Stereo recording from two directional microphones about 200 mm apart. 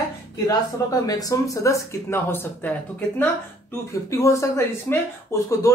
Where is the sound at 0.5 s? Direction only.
20° left (ahead or behind).